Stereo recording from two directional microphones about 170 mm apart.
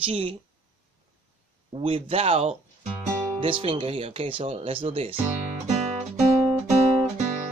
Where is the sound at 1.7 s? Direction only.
35° right (ahead or behind).